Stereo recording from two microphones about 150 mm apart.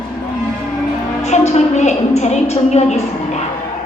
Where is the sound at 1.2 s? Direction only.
50° left (ahead or behind).